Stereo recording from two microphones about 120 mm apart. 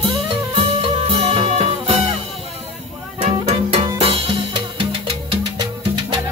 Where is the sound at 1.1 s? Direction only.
50° right (ahead or behind).